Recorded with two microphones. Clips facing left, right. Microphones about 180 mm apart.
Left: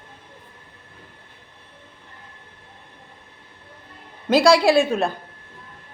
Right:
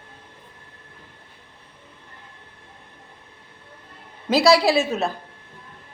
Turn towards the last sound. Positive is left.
turn(degrees=0)  # may be behind; listen again after turning